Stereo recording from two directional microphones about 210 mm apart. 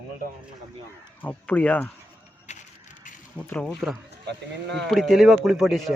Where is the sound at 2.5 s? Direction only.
35° left (ahead or behind).